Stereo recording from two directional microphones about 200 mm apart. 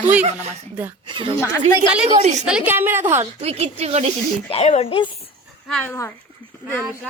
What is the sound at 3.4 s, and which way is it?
Speech, 30° right (ahead or behind).